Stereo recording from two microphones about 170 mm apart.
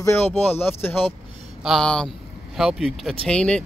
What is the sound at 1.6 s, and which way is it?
Speech, centre (ahead or behind).